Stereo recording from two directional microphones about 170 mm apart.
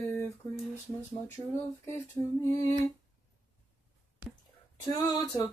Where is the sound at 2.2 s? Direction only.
5° left (ahead or behind).